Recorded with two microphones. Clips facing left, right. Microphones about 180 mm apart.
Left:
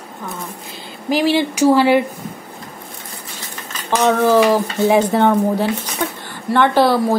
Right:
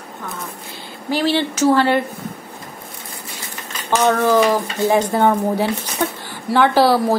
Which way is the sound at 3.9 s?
Centre (ahead or behind).